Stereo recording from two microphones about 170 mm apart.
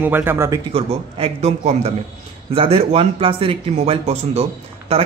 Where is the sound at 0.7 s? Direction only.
35° right (ahead or behind).